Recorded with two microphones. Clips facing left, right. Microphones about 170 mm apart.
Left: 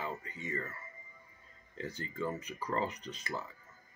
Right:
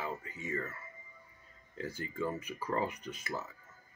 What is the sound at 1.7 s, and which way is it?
Speech, 10° right (ahead or behind).